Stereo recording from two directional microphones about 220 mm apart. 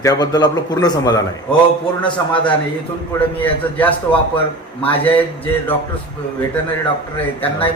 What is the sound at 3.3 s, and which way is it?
Speech, 5° left (ahead or behind).